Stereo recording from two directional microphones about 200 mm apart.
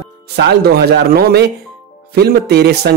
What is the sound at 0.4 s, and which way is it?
Speech, 55° right (ahead or behind).